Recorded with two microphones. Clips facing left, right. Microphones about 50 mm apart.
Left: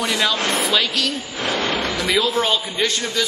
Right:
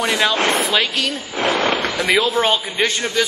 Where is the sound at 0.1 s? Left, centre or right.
Right.